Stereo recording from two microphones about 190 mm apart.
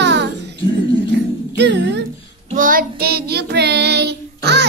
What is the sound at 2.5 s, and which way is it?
Child singing, 45° right (ahead or behind).